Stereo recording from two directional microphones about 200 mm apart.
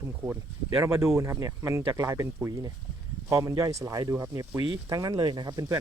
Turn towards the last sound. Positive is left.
turn(degrees=-20)  # may be behind; listen again after turning